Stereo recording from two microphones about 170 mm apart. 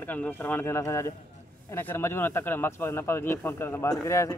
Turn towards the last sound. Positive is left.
turn(degrees=15)  # may be behind; listen again after turning